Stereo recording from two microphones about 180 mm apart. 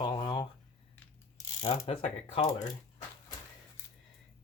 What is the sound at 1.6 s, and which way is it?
Speech, 30° left (ahead or behind).